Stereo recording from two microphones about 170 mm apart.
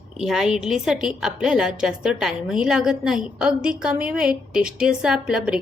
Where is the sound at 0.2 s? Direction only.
5° right (ahead or behind).